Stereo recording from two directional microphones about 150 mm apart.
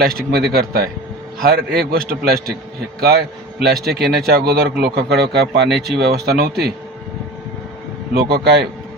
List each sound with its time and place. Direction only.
0.0 s a man's voice: 90° right
8.1 s speech: 90° right